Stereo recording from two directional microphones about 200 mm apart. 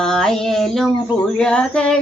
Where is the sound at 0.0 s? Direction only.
5° left (ahead or behind).